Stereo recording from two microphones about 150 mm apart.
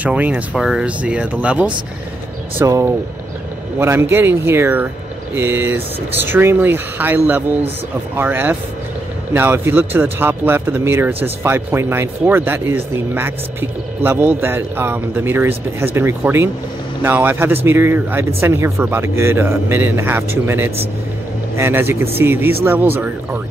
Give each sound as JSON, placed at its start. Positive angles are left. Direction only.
{"t": 0.0, "sound": "speech", "side_deg": -10}
{"t": 2.6, "sound": "speech", "side_deg": -20}